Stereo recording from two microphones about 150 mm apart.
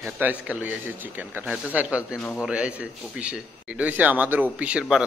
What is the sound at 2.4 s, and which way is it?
A man's voice, 10° right (ahead or behind).